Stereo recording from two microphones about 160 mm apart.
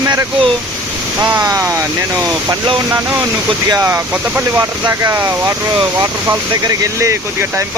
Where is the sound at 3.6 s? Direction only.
20° right (ahead or behind).